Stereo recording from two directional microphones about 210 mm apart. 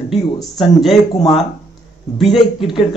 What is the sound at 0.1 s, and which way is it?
Speech, centre (ahead or behind).